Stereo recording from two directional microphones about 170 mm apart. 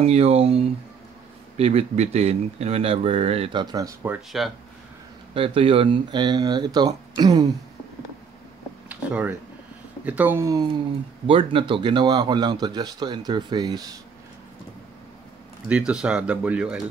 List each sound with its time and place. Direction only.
0.0 s speech: 35° right (ahead or behind); by 4.2 s 15° right (ahead or behind)
5.3 s speech: 30° right (ahead or behind)
8.8 s a sound: 10° right (ahead or behind)
10.0 s speech: 10° right (ahead or behind)
11.2 s speech: 30° right (ahead or behind)
15.7 s speech: 5° right (ahead or behind)